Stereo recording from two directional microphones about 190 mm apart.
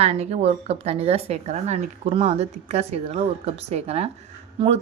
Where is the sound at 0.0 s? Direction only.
35° right (ahead or behind).